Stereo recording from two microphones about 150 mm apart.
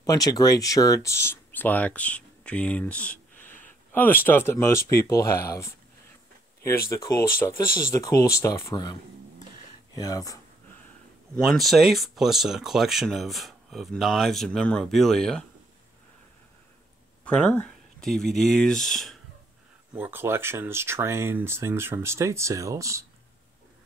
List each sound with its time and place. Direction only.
0.0 s speech: 25° left (ahead or behind)
6.9 s speech: 20° left (ahead or behind)
9.9 s speech: 25° left (ahead or behind)
11.4 s speech: centre (ahead or behind)
17.2 s speech: 10° left (ahead or behind)
20.0 s speech: 15° right (ahead or behind)